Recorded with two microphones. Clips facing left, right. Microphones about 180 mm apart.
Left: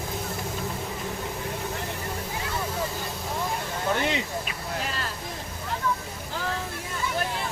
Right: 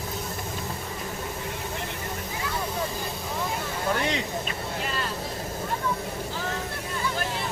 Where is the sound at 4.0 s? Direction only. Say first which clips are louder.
Even; 5° left (ahead or behind).